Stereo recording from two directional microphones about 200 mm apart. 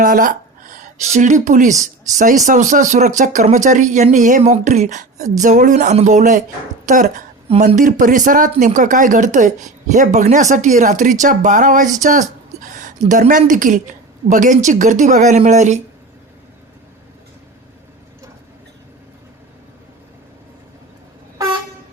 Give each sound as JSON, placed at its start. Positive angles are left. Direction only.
{"t": 0.0, "sound": "speech", "side_deg": -45}
{"t": 6.8, "sound": "a sound", "side_deg": -40}
{"t": 7.8, "sound": "speech", "side_deg": -40}